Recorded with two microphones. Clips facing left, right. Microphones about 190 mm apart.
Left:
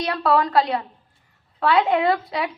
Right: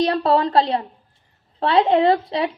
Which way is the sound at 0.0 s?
30° right (ahead or behind).